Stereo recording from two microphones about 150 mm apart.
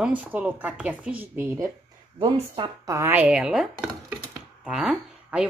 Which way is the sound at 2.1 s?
35° right (ahead or behind).